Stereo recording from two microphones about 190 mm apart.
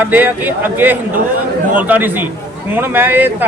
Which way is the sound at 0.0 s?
10° right (ahead or behind).